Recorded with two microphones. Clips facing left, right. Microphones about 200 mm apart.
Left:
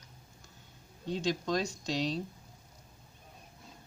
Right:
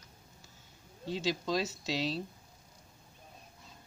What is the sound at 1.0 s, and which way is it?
Speech, 5° right (ahead or behind).